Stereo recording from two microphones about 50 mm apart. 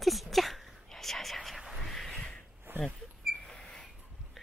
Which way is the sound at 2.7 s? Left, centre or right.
Right.